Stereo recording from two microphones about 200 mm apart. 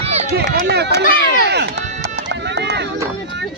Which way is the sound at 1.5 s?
55° right (ahead or behind).